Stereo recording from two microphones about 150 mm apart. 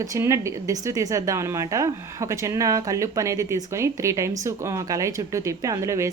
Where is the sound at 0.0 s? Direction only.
20° right (ahead or behind).